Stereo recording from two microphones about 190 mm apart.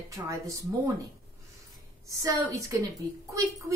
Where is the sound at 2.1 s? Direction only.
15° right (ahead or behind).